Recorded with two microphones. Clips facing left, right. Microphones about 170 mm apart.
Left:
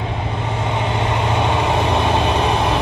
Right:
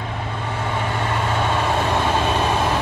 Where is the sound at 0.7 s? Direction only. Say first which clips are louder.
Left 3 dB; 20° left (ahead or behind).